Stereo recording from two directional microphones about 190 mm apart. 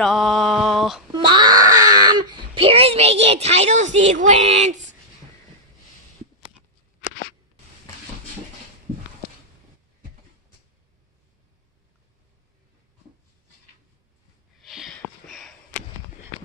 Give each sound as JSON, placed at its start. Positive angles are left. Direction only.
{"t": 0.0, "sound": "male singing", "side_deg": 0}
{"t": 1.1, "sound": "wail", "side_deg": -25}
{"t": 14.6, "sound": "sniff", "side_deg": 0}